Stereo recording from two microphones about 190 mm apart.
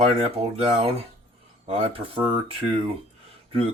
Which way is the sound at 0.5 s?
30° right (ahead or behind).